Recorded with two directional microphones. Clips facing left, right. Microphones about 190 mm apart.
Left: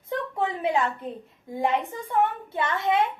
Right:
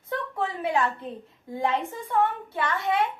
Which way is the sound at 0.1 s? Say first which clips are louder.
Left 2 dB; 20° left (ahead or behind).